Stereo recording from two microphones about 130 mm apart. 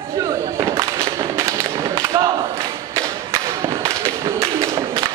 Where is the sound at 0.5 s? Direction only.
20° right (ahead or behind).